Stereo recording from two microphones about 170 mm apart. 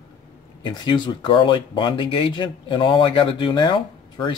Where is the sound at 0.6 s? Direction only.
25° left (ahead or behind).